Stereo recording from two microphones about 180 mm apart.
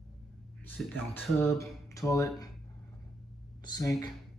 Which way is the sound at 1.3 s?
15° left (ahead or behind).